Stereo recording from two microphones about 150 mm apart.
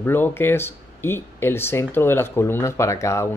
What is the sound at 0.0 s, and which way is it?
Speech, 15° left (ahead or behind).